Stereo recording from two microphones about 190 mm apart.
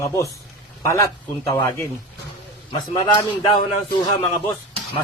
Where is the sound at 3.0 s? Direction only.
20° left (ahead or behind).